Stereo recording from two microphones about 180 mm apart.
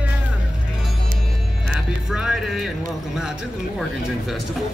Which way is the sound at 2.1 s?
5° right (ahead or behind).